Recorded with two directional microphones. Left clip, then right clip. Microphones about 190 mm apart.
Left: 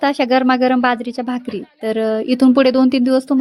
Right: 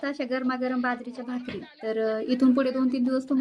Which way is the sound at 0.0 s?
50° left (ahead or behind).